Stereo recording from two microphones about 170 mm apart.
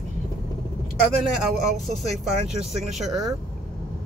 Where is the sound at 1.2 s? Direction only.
Centre (ahead or behind).